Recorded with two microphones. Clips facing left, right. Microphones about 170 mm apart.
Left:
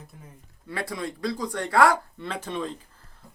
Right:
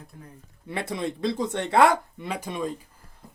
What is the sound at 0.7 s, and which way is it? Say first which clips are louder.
Speech: right 2 dB; 20° right (ahead or behind).